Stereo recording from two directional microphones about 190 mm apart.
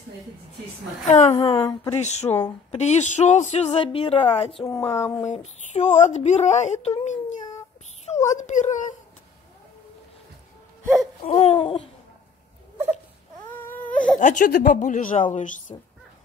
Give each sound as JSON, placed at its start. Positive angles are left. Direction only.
{"t": 1.3, "sound": "a woman's voice", "side_deg": 25}
{"t": 2.0, "sound": "speech", "side_deg": 35}
{"t": 4.6, "sound": "a sound", "side_deg": 15}
{"t": 5.2, "sound": "a child's voice", "side_deg": 35}
{"t": 11.2, "sound": "speech", "side_deg": 30}
{"t": 13.6, "sound": "baby cry", "side_deg": 10}
{"t": 14.1, "sound": "a woman's voice", "side_deg": 40}